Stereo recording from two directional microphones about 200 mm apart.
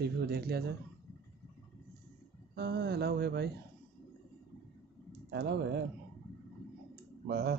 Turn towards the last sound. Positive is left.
turn(degrees=-55)  # may be behind; listen again after turning